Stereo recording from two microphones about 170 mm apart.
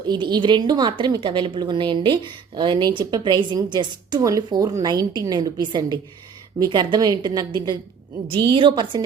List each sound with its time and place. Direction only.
0.1 s a woman's voice: 25° right (ahead or behind)